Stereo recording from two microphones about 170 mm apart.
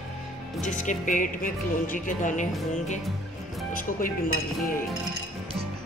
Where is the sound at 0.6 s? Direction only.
45° left (ahead or behind).